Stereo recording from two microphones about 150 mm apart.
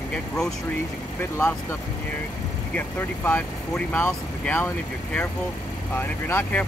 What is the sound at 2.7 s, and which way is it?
Speech, 10° left (ahead or behind).